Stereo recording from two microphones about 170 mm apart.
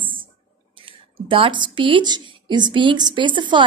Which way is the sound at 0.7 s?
30° right (ahead or behind).